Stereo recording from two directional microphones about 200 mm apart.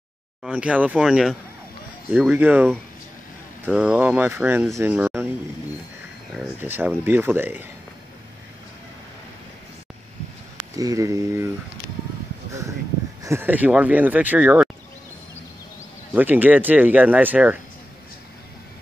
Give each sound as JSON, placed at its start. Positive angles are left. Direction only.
{"t": 0.4, "sound": "speech", "side_deg": -5}
{"t": 3.7, "sound": "speech", "side_deg": -5}
{"t": 6.8, "sound": "speech", "side_deg": -10}
{"t": 10.8, "sound": "speech", "side_deg": -15}
{"t": 13.2, "sound": "speech", "side_deg": -10}
{"t": 16.2, "sound": "speech", "side_deg": -10}